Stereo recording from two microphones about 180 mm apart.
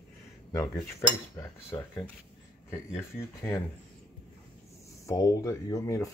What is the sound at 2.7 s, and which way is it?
Speech, 15° left (ahead or behind).